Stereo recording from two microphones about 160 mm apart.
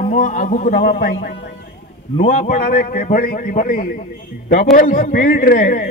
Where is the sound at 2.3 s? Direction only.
60° left (ahead or behind).